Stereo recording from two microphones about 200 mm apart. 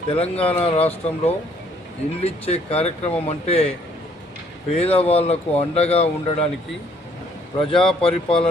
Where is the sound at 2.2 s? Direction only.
30° left (ahead or behind).